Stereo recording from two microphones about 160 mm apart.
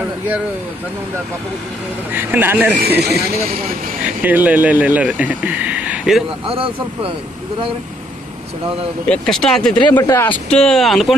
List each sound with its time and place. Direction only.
2.1 s speech: 10° right (ahead or behind)
2.8 s speech: 80° right
4.0 s speech: 10° right (ahead or behind)
6.4 s speech: 35° right (ahead or behind)
9.1 s speech: 5° left (ahead or behind)
9.9 s speech: 15° left (ahead or behind)
10.5 s speech: 5° left (ahead or behind)